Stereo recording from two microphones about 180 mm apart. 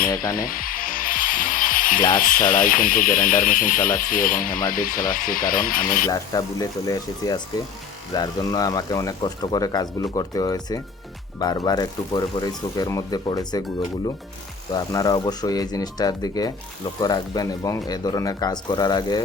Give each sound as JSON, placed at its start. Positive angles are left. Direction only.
{"t": 0.3, "sound": "music", "side_deg": 50}
{"t": 2.1, "sound": "speech", "side_deg": 50}
{"t": 6.1, "sound": "speech", "side_deg": 20}
{"t": 14.7, "sound": "speech", "side_deg": 20}